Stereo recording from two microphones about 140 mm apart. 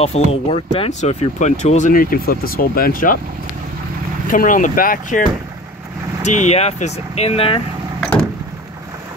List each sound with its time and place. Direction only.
0.0 s speech: 50° left (ahead or behind); by 3.2 s 85° left
4.3 s speech: 75° left (ahead or behind)
6.2 s speech: 55° left (ahead or behind)